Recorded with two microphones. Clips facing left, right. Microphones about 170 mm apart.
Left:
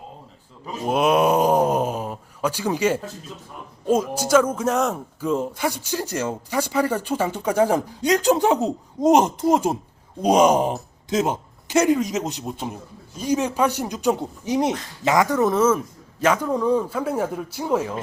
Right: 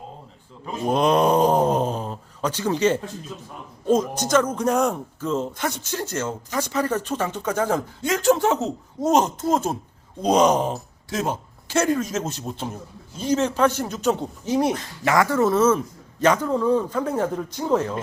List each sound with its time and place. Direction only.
0.7 s groan: 5° left (ahead or behind)
3.8 s speech: 10° left (ahead or behind)
5.2 s speech: 10° left (ahead or behind)